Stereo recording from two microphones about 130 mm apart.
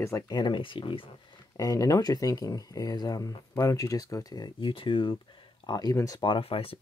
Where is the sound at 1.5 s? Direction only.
25° left (ahead or behind).